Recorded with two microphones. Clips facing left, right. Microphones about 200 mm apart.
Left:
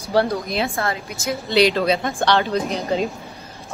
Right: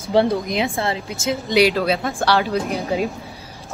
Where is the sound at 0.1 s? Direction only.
20° right (ahead or behind).